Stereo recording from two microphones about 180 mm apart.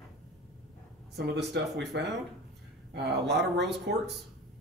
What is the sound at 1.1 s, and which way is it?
Speech, 70° right (ahead or behind).